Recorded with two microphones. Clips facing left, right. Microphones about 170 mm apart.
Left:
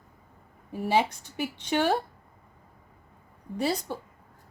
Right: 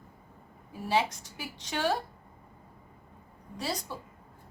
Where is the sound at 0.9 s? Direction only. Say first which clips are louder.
Left 3 dB; 60° left (ahead or behind).